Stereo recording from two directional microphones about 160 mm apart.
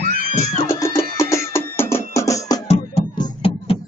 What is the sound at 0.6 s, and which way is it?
Music, 20° left (ahead or behind).